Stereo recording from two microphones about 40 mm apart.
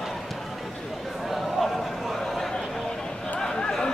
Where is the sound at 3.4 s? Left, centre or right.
Centre.